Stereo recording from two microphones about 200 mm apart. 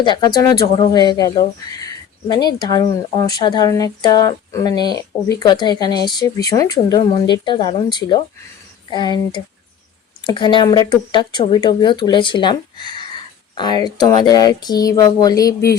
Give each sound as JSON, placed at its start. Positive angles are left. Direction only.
{"t": 0.0, "sound": "speech", "side_deg": 25}